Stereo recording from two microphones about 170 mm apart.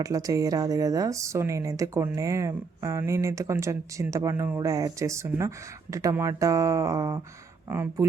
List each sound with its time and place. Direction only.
0.0 s speech: 20° right (ahead or behind)